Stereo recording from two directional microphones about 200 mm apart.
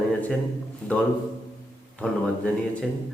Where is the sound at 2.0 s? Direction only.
5° left (ahead or behind).